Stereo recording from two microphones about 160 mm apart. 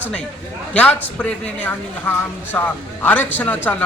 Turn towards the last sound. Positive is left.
turn(degrees=10)  # may be behind; listen again after turning